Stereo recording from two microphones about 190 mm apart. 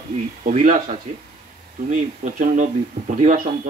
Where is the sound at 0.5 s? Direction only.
40° right (ahead or behind).